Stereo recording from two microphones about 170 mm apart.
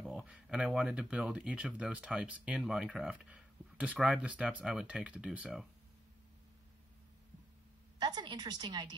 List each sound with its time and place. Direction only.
0.0 s speech: 5° right (ahead or behind)
8.0 s a woman's voice: 25° right (ahead or behind)